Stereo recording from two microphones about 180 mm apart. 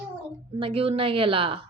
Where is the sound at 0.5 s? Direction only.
30° right (ahead or behind).